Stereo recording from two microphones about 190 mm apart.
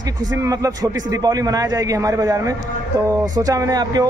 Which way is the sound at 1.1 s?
20° right (ahead or behind).